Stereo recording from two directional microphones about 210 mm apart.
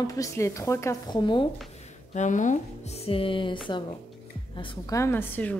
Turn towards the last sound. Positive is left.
turn(degrees=10)  # may be behind; listen again after turning